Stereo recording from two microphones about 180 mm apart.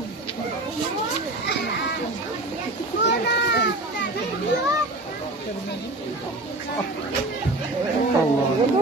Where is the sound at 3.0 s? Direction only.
65° left (ahead or behind).